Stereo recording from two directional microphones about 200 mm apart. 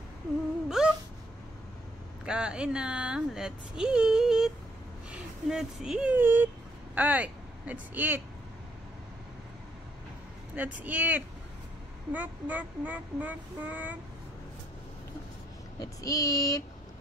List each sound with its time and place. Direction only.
0.7 s a sound: centre (ahead or behind)
2.2 s speech: 5° right (ahead or behind)
10.5 s child singing: 10° right (ahead or behind)
15.8 s child singing: 15° left (ahead or behind)